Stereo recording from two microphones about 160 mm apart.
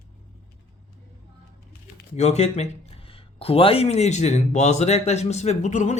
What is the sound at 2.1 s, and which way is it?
Speech, 45° left (ahead or behind).